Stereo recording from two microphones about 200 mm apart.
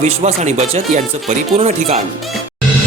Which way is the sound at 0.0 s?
30° right (ahead or behind).